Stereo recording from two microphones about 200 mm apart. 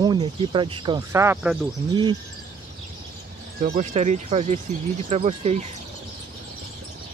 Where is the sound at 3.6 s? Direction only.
35° right (ahead or behind).